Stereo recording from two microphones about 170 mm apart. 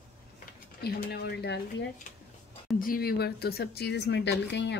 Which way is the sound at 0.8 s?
70° left (ahead or behind).